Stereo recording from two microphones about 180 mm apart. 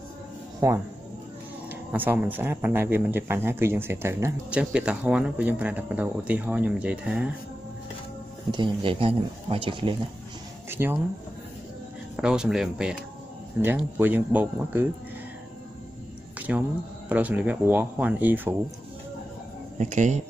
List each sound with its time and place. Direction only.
0.6 s speech: 15° right (ahead or behind)
1.9 s speech: 10° right (ahead or behind)
8.5 s speech: 25° right (ahead or behind)
10.7 s speech: 10° right (ahead or behind)
12.2 s speech: 5° right (ahead or behind)
16.3 s music: 10° right (ahead or behind)
17.1 s speech: 10° right (ahead or behind)
19.8 s speech: 40° right (ahead or behind)